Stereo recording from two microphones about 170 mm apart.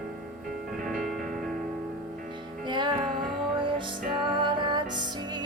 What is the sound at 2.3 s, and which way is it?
Music, 25° right (ahead or behind).